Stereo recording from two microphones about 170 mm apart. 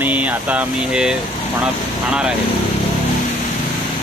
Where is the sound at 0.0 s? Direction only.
10° right (ahead or behind).